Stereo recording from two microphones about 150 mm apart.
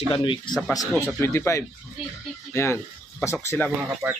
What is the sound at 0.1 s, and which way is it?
Speech, 35° left (ahead or behind).